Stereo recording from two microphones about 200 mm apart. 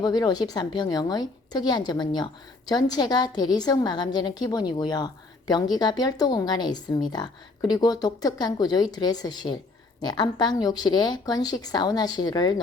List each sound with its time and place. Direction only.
0.0 s speech: 20° left (ahead or behind)